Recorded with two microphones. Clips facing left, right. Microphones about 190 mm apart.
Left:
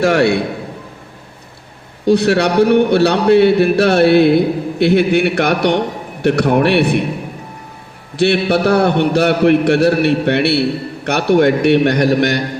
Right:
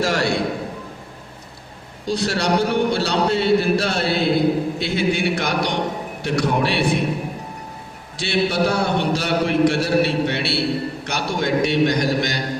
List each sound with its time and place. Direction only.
0.0 s a sound: 60° left (ahead or behind)
2.0 s a man's voice: 60° left (ahead or behind)
8.1 s a man's voice: 60° left (ahead or behind)